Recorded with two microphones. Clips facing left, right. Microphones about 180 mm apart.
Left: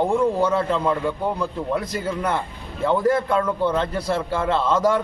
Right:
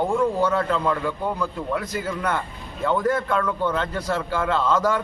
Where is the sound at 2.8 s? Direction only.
30° left (ahead or behind).